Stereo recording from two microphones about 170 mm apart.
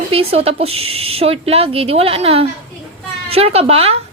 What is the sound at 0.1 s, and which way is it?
A woman's voice, 35° right (ahead or behind).